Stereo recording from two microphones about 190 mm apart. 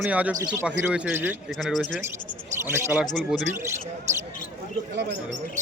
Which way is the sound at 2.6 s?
15° right (ahead or behind).